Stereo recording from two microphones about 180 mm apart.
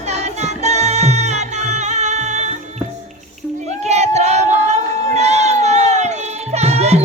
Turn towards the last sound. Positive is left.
turn(degrees=-35)  # may be behind; listen again after turning